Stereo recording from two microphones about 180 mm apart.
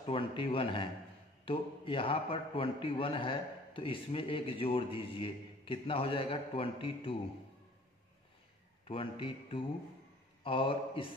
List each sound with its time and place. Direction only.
0.0 s a man's voice: 30° left (ahead or behind)
8.8 s a man's voice: 30° left (ahead or behind)